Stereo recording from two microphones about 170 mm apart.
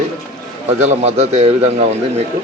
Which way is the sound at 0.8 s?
40° right (ahead or behind).